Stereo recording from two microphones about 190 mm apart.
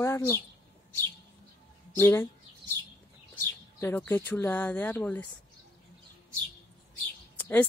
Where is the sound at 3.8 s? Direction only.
10° left (ahead or behind).